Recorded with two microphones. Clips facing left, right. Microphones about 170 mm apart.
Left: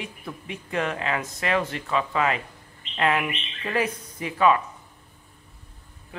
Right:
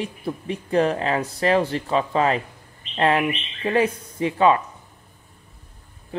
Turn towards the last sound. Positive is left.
turn(degrees=-30)  # may be behind; listen again after turning